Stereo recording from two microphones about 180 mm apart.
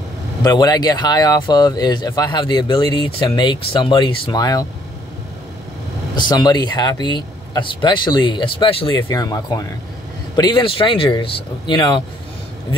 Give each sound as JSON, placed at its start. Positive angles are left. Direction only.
{"t": 0.4, "sound": "speech", "side_deg": 20}
{"t": 6.1, "sound": "speech", "side_deg": 25}